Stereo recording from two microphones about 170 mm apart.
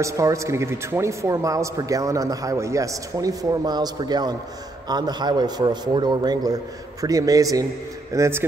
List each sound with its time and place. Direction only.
0.0 s a man's voice: 20° right (ahead or behind)